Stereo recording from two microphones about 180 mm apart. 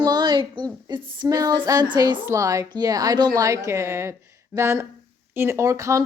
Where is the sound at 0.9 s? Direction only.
25° right (ahead or behind).